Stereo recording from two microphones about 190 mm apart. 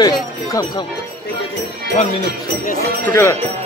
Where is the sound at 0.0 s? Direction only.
20° left (ahead or behind).